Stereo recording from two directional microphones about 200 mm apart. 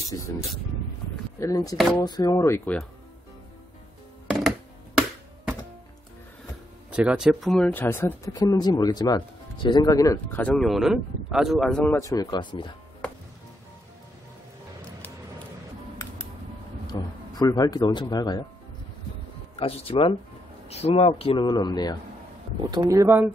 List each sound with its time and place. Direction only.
0.3 s speech: 15° left (ahead or behind)
1.8 s speech: 5° left (ahead or behind)
2.0 s speech: 20° left (ahead or behind)
6.9 s speech: 5° right (ahead or behind); by 12.7 s 25° left (ahead or behind)
16.9 s a sound: 20° left (ahead or behind)
17.4 s speech: 20° left (ahead or behind)
19.5 s speech: 30° left (ahead or behind)
22.6 s speech: 20° right (ahead or behind)